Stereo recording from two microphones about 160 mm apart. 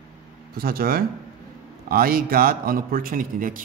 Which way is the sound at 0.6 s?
70° right (ahead or behind).